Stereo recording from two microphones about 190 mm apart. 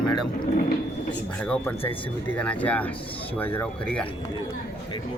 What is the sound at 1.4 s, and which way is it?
A man's voice, 5° left (ahead or behind).